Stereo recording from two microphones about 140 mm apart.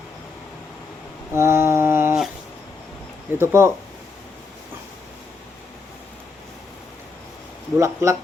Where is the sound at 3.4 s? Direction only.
20° right (ahead or behind).